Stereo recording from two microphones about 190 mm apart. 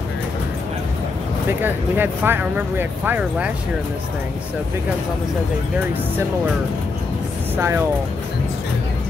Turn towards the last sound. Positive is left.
turn(degrees=-10)  # may be behind; listen again after turning